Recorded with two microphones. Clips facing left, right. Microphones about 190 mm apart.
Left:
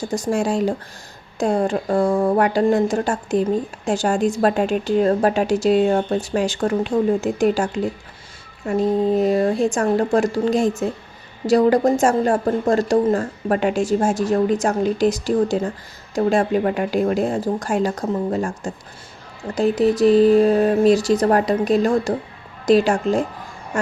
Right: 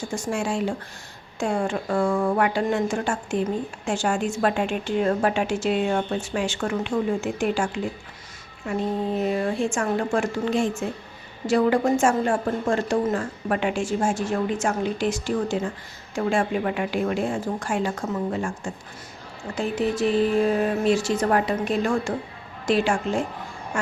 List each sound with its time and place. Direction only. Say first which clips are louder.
0.1 s a woman's voice: left 6 dB; 35° left (ahead or behind)